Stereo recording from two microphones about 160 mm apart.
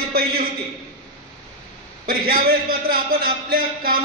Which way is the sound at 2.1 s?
65° right (ahead or behind).